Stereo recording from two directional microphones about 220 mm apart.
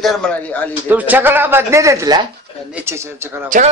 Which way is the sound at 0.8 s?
10° right (ahead or behind).